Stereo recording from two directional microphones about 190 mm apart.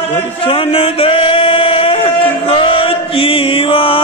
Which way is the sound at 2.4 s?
30° left (ahead or behind).